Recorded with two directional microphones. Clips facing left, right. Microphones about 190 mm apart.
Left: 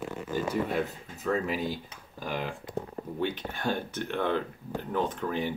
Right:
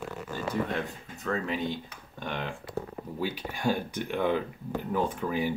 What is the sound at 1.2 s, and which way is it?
Speech, 5° left (ahead or behind).